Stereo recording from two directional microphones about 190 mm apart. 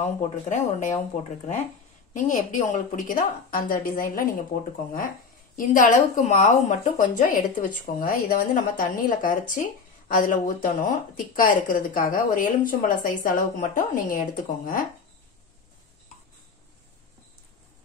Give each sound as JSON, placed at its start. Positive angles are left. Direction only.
{"t": 0.0, "sound": "speech", "side_deg": 40}
{"t": 2.1, "sound": "speech", "side_deg": 40}
{"t": 5.7, "sound": "speech", "side_deg": 40}